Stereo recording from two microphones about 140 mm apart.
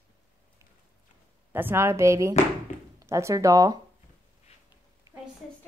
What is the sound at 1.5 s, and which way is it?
Speech, 15° right (ahead or behind).